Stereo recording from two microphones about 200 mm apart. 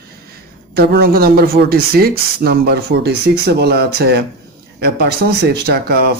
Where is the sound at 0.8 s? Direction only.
50° right (ahead or behind).